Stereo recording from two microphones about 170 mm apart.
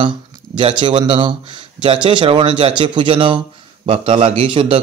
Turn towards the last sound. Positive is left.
turn(degrees=-30)  # may be behind; listen again after turning